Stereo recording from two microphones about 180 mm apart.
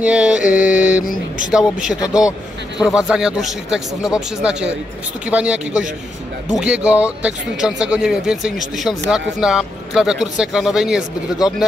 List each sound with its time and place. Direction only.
0.0 s speech: 5° right (ahead or behind)
0.4 s mantra: 45° left (ahead or behind)
0.7 s mantra: 5° right (ahead or behind)
1.5 s speech: 5° right (ahead or behind)